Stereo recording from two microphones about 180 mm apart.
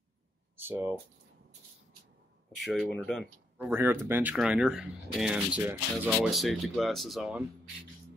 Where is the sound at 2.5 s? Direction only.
Centre (ahead or behind).